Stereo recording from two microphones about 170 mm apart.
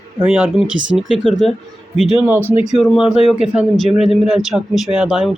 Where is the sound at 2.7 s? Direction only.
Centre (ahead or behind).